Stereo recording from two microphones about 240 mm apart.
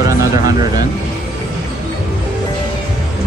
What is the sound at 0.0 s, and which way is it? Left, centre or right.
Vehicle, centre.